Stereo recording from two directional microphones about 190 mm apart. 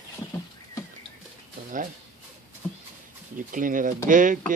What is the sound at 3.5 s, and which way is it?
Speech, 45° right (ahead or behind).